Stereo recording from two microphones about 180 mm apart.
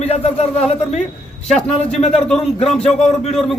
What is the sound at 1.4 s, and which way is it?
Speech, 5° left (ahead or behind).